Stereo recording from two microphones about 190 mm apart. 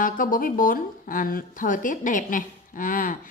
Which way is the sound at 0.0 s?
45° left (ahead or behind).